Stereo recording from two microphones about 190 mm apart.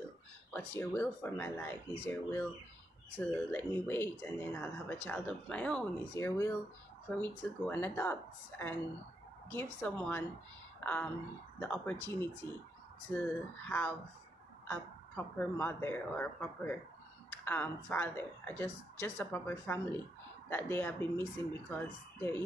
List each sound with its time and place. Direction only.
0.5 s speech: 10° left (ahead or behind)
11.6 s speech: 5° left (ahead or behind)
13.7 s speech: 10° left (ahead or behind)